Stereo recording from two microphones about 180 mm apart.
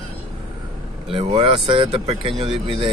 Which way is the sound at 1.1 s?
30° right (ahead or behind).